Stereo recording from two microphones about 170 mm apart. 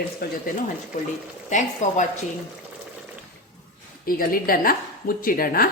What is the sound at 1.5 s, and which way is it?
Speech, 45° left (ahead or behind).